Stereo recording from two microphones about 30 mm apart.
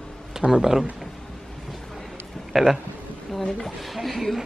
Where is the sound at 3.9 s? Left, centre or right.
Centre.